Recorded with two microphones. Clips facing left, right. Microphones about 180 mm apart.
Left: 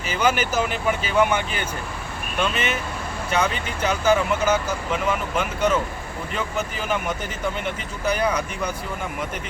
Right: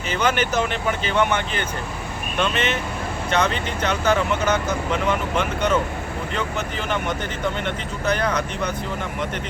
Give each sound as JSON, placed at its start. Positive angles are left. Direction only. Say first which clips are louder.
{"t": 0.1, "sound": "speech", "louder": "even", "side_deg": 5}